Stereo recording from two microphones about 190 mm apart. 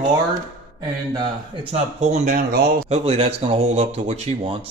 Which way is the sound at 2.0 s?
40° right (ahead or behind).